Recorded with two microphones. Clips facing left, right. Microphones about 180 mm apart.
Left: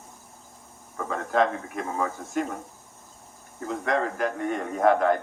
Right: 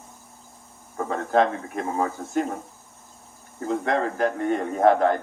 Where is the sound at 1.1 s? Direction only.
30° right (ahead or behind).